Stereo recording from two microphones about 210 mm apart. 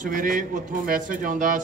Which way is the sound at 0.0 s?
40° right (ahead or behind).